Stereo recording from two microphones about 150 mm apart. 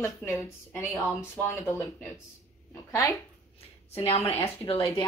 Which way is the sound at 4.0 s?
40° left (ahead or behind).